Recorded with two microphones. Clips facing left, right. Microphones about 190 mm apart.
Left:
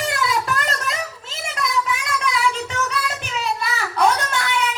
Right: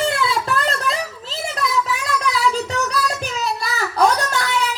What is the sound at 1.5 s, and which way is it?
Child singing, 35° right (ahead or behind).